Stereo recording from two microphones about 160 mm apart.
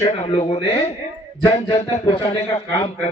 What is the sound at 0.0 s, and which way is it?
A man's voice, 40° left (ahead or behind).